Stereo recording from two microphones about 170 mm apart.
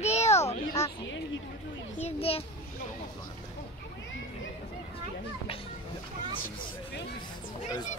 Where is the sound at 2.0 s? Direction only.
35° left (ahead or behind).